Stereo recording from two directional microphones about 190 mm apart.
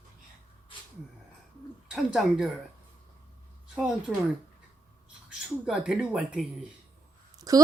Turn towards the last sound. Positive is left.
turn(degrees=-20)  # may be behind; listen again after turning